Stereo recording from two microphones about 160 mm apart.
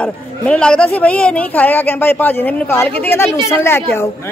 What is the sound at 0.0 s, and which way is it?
Speech, 5° left (ahead or behind).